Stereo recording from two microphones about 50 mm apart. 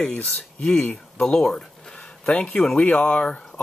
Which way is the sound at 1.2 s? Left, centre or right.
Centre.